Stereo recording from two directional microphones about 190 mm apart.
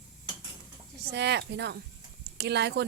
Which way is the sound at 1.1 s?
65° right (ahead or behind).